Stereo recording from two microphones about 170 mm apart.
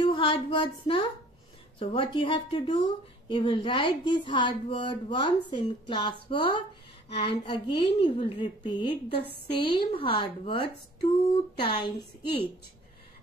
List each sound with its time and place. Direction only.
0.0 s a woman's voice: 35° left (ahead or behind)